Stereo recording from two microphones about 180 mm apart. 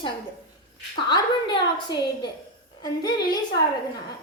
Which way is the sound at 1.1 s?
25° left (ahead or behind).